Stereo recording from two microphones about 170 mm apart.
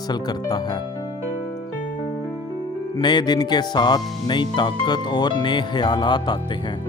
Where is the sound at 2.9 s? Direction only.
25° left (ahead or behind).